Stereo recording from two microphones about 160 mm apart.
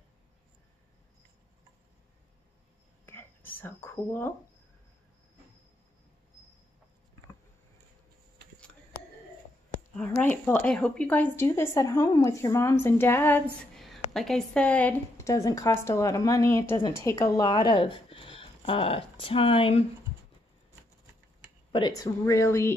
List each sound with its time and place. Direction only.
3.5 s a woman's voice: 15° left (ahead or behind)
10.4 s a woman's voice: 10° left (ahead or behind)
13.6 s a woman's voice: centre (ahead or behind); by 19.9 s 35° left (ahead or behind)
21.7 s a woman's voice: 25° left (ahead or behind)